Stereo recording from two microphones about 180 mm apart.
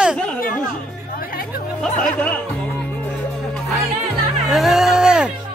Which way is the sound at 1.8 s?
5° left (ahead or behind).